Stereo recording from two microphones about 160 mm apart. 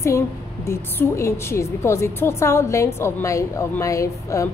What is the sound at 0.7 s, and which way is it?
A woman's voice, 15° left (ahead or behind).